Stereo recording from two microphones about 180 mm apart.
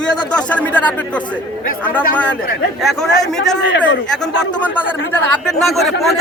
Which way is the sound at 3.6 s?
90° left.